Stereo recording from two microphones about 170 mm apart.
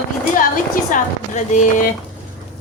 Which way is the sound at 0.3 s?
50° left (ahead or behind).